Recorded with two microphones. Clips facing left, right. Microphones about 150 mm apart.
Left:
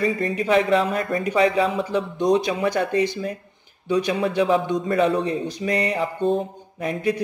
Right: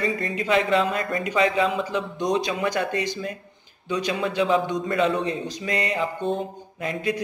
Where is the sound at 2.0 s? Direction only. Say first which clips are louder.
Left 8 dB; 30° left (ahead or behind).